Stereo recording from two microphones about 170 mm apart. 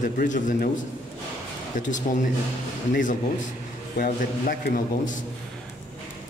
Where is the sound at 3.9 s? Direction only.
60° left (ahead or behind).